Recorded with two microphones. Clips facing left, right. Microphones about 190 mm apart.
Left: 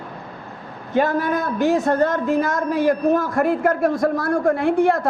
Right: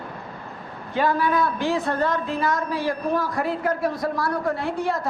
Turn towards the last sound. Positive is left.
turn(degrees=55)  # may be behind; listen again after turning